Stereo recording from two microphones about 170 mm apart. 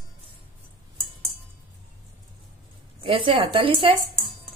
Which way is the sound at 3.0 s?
30° right (ahead or behind).